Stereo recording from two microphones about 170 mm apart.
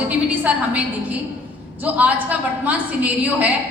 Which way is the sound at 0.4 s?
10° right (ahead or behind).